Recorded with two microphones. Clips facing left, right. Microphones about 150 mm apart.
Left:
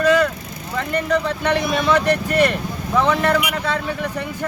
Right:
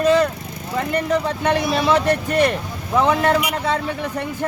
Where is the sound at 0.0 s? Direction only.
25° right (ahead or behind).